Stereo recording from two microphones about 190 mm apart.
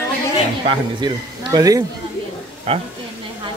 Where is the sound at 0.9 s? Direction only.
20° right (ahead or behind).